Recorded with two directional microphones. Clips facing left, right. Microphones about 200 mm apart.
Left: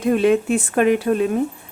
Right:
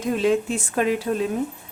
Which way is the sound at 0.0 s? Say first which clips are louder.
Left 4 dB; 60° left (ahead or behind).